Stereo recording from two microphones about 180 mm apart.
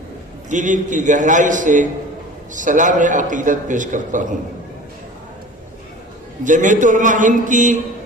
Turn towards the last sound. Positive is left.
turn(degrees=-45)  # may be behind; listen again after turning